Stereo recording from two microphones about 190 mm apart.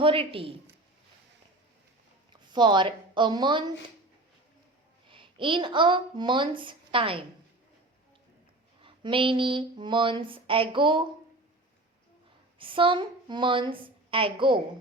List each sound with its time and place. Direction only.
0.0 s speech: 30° right (ahead or behind)
2.3 s speech: 25° right (ahead or behind)
5.0 s speech: 25° right (ahead or behind)
8.8 s speech: 25° right (ahead or behind)
12.5 s a woman's voice: 25° right (ahead or behind)